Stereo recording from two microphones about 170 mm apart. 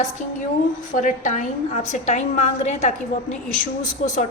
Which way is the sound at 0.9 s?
50° left (ahead or behind).